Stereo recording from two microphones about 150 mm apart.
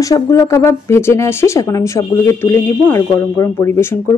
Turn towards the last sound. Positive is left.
turn(degrees=20)  # may be behind; listen again after turning